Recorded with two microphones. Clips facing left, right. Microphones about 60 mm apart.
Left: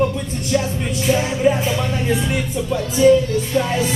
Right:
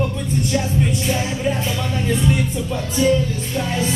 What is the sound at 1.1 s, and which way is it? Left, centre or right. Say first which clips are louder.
Music: left 5 dB; centre.